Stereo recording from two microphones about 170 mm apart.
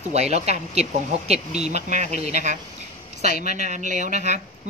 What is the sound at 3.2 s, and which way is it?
Speech, 65° left (ahead or behind).